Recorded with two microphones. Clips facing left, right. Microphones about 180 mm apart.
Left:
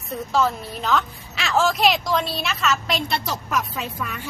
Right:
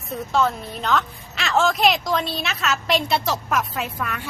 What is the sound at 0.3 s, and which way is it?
A woman's voice, centre (ahead or behind).